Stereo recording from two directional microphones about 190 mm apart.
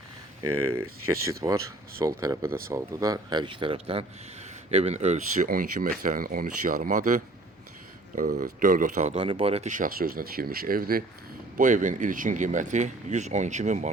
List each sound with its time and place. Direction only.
1.2 s speech: 15° right (ahead or behind); by 13.9 s 40° right (ahead or behind)